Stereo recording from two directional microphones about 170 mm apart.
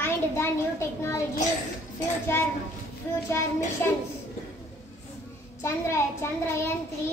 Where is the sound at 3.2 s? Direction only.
15° left (ahead or behind).